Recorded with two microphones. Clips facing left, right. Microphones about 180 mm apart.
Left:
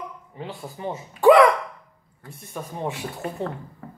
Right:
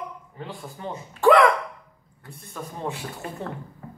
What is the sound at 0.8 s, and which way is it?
Speech, 15° left (ahead or behind).